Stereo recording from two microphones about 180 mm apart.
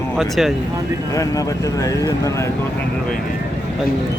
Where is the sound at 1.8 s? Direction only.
20° left (ahead or behind).